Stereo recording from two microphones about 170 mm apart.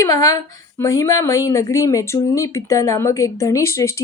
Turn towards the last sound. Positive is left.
turn(degrees=15)  # may be behind; listen again after turning